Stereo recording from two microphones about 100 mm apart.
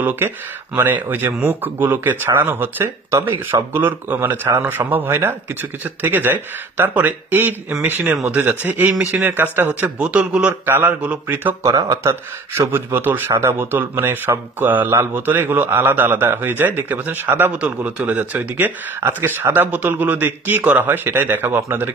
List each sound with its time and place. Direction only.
0.0 s speech: 20° right (ahead or behind)
11.6 s speech: 35° right (ahead or behind)